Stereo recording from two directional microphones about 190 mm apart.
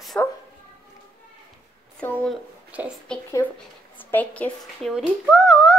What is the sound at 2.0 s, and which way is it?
Speech, 10° left (ahead or behind).